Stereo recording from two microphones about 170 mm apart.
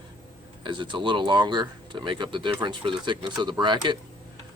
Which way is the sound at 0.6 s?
30° right (ahead or behind).